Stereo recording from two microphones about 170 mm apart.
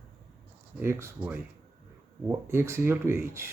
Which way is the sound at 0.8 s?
15° right (ahead or behind).